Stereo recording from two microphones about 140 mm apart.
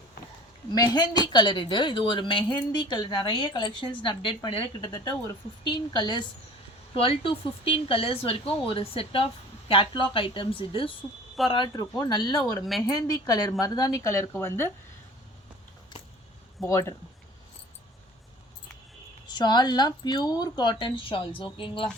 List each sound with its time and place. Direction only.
0.7 s a woman's voice: 30° left (ahead or behind)
16.6 s a woman's voice: 20° left (ahead or behind)
19.3 s speech: 30° left (ahead or behind)